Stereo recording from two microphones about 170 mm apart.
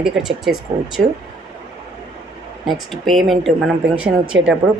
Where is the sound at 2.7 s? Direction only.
Centre (ahead or behind).